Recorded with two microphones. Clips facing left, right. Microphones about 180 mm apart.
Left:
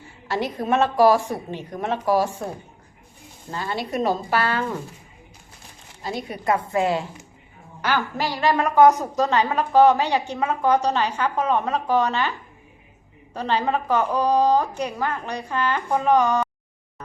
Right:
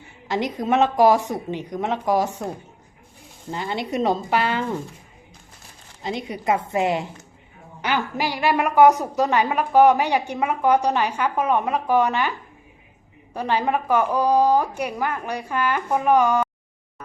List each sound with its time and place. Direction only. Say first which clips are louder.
0.3 s a woman's voice: right 1 dB; 20° right (ahead or behind)
3.5 s a woman's voice: right 1 dB; 20° right (ahead or behind)
6.0 s a woman's voice: right 1 dB; 20° right (ahead or behind)
13.3 s a woman's voice: right 1 dB; 10° right (ahead or behind)